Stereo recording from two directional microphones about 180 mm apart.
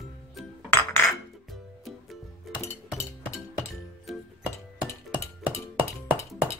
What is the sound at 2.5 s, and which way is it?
Music, centre (ahead or behind).